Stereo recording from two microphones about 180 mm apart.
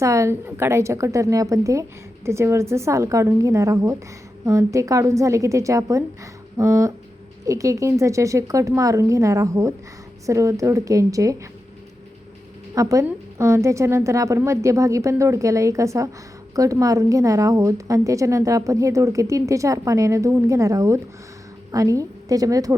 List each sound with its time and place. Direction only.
0.0 s a woman's voice: 15° right (ahead or behind)
12.7 s a woman's voice: 20° right (ahead or behind)